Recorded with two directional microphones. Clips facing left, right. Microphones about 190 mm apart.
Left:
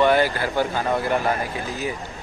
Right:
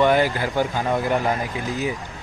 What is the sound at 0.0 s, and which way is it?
Speech, 15° right (ahead or behind).